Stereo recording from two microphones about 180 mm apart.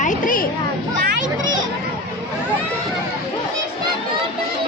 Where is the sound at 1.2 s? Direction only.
90° right.